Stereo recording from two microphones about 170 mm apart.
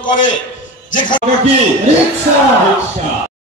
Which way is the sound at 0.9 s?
50° left (ahead or behind).